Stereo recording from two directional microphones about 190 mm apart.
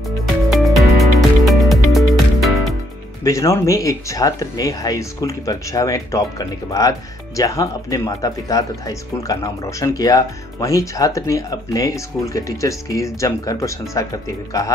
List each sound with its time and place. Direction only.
0.7 s music: centre (ahead or behind)
3.3 s speech: 15° left (ahead or behind)